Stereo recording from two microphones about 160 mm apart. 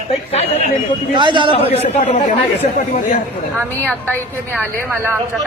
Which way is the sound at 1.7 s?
40° left (ahead or behind).